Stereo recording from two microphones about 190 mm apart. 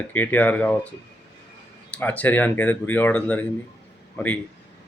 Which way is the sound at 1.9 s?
10° left (ahead or behind).